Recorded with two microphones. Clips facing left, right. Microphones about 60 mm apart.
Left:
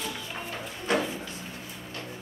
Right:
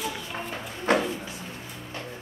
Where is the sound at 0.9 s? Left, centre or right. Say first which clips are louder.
Right 4 dB; right.